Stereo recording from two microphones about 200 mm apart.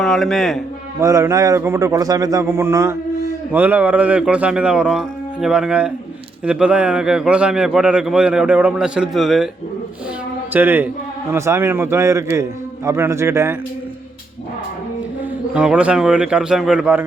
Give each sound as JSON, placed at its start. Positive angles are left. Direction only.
{"t": 0.0, "sound": "a man's voice", "side_deg": 0}
{"t": 0.9, "sound": "a man's voice", "side_deg": -15}
{"t": 10.5, "sound": "a man's voice", "side_deg": -10}
{"t": 15.5, "sound": "a man's voice", "side_deg": -5}